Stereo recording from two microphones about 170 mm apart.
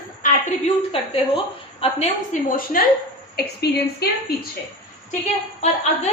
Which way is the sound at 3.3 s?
70° left (ahead or behind).